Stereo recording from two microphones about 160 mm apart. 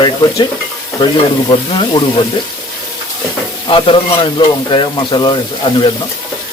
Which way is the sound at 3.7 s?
30° left (ahead or behind).